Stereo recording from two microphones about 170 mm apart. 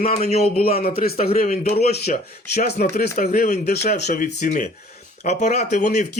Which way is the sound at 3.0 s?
60° left (ahead or behind).